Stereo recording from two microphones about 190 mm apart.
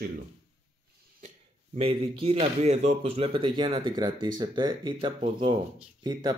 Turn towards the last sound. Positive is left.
turn(degrees=-25)  # may be behind; listen again after turning